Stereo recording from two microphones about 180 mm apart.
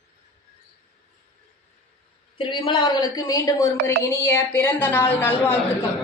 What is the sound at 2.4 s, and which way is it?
A woman's voice, 25° left (ahead or behind).